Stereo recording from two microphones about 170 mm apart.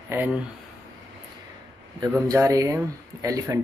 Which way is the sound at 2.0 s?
20° right (ahead or behind).